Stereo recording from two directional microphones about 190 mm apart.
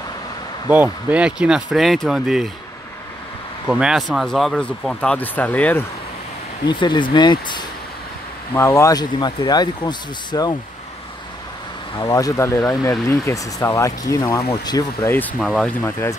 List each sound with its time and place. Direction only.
1.0 s speech: 5° right (ahead or behind)
3.6 s speech: 5° right (ahead or behind)
6.6 s speech: 25° left (ahead or behind)
12.0 s speech: 20° left (ahead or behind)